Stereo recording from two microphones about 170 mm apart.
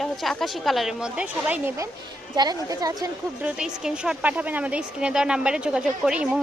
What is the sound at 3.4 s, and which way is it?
A woman's voice, 5° right (ahead or behind).